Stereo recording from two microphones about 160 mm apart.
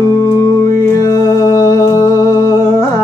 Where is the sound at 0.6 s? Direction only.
20° left (ahead or behind).